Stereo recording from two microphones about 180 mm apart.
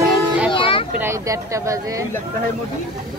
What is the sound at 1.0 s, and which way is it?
Speech, 15° right (ahead or behind).